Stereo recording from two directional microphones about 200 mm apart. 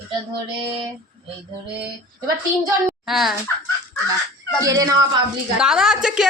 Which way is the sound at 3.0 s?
Centre (ahead or behind).